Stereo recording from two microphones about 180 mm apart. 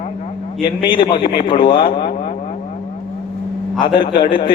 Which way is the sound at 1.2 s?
55° left (ahead or behind).